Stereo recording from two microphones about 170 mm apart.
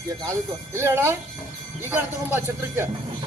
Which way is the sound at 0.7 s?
15° right (ahead or behind).